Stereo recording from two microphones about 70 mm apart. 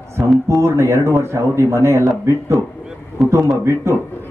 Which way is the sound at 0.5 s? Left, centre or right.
Right.